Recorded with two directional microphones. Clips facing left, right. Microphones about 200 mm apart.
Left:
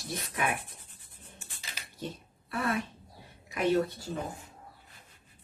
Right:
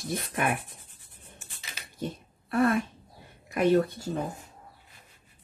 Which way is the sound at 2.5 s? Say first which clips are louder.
Right 7 dB; 50° right (ahead or behind).